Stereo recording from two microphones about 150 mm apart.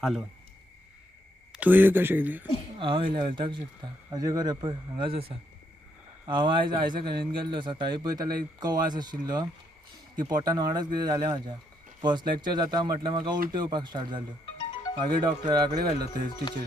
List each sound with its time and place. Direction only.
1.5 s speech: 10° right (ahead or behind)
2.7 s speech: 35° right (ahead or behind)
7.0 s a man's voice: 90° right
7.3 s speech: 30° right (ahead or behind)
16.3 s speech: 30° left (ahead or behind)